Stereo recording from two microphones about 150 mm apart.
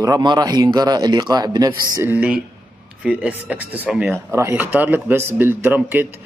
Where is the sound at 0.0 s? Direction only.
25° right (ahead or behind).